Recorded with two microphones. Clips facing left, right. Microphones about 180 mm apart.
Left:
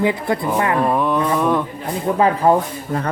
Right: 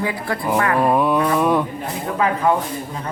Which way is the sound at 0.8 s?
10° right (ahead or behind).